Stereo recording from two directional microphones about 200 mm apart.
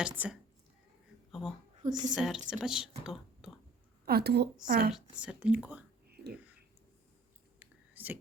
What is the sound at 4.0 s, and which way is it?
Speech, 50° right (ahead or behind).